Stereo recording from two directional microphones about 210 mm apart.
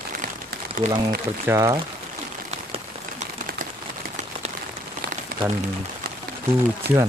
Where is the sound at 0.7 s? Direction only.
40° right (ahead or behind).